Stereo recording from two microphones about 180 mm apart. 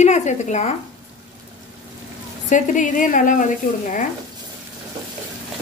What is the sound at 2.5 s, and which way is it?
A woman's voice, 45° left (ahead or behind).